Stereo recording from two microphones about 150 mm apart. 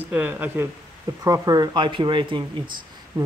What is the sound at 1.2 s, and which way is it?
Speech, 25° right (ahead or behind).